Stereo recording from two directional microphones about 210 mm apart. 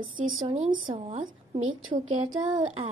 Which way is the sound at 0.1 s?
70° right (ahead or behind).